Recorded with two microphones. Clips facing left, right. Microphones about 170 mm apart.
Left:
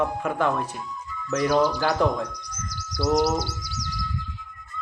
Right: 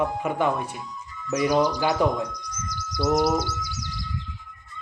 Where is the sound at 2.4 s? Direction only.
55° right (ahead or behind).